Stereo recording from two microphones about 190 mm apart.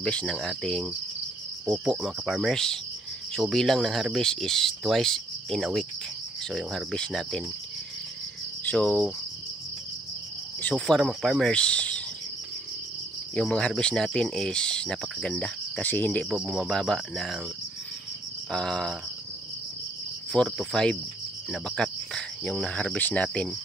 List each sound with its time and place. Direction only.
0.0 s speech: 5° left (ahead or behind)
8.6 s speech: 5° left (ahead or behind)
10.6 s speech: 5° left (ahead or behind)
13.3 s speech: 5° left (ahead or behind)
18.5 s speech: 5° left (ahead or behind)
20.3 s speech: 5° left (ahead or behind)